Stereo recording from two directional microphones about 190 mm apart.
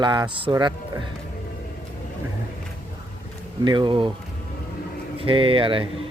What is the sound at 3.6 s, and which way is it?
Speech, 25° right (ahead or behind).